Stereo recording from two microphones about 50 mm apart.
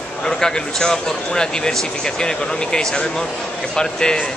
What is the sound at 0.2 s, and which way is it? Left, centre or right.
Speech, centre.